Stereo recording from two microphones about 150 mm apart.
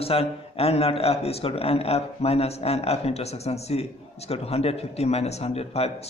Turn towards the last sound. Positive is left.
turn(degrees=45)  # may be behind; listen again after turning